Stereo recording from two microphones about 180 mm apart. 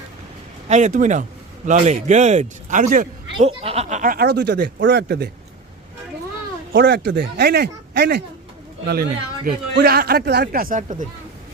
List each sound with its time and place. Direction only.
0.7 s a man's voice: 40° right (ahead or behind)
3.4 s speech: 35° right (ahead or behind); by 5.3 s 65° right (ahead or behind)
6.7 s speech: 65° right (ahead or behind); by 11.0 s 45° right (ahead or behind)